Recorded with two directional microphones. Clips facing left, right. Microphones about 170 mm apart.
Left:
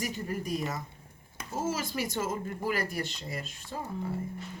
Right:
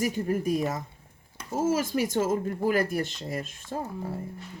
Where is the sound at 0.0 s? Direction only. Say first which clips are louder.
Right 8 dB; 50° right (ahead or behind).